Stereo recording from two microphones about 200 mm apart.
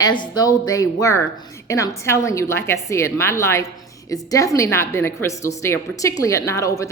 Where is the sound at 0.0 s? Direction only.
20° left (ahead or behind).